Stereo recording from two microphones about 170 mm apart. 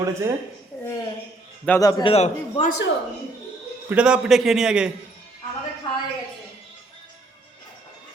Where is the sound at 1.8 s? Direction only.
25° left (ahead or behind).